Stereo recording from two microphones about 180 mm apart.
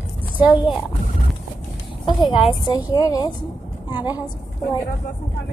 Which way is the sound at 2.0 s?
25° left (ahead or behind).